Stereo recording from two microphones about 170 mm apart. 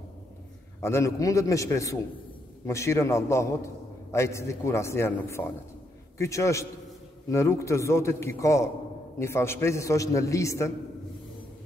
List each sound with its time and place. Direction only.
0.7 s a man's voice: 15° left (ahead or behind)